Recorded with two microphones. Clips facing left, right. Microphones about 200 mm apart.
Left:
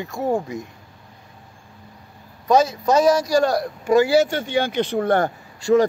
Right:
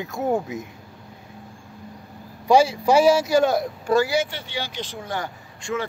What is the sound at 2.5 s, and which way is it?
Speech, 10° right (ahead or behind).